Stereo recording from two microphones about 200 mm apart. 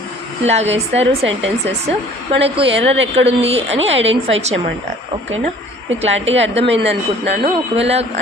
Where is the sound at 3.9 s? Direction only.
70° right (ahead or behind).